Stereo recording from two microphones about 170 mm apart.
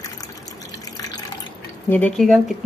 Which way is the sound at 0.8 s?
20° left (ahead or behind).